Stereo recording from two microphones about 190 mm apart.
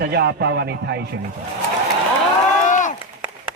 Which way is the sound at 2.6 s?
40° left (ahead or behind).